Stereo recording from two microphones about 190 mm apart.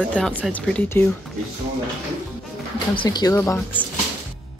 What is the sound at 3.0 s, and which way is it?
Speech, 20° left (ahead or behind).